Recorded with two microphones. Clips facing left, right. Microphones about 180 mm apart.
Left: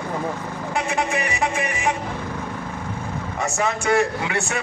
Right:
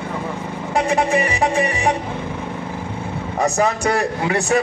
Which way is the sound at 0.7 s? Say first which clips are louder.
Right 6 dB; 35° right (ahead or behind).